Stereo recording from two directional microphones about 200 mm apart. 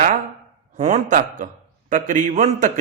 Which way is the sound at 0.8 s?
35° right (ahead or behind).